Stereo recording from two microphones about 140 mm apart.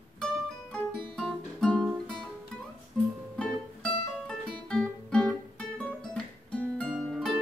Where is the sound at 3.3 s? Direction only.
5° left (ahead or behind).